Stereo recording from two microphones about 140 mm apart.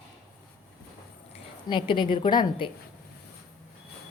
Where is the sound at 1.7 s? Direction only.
35° left (ahead or behind).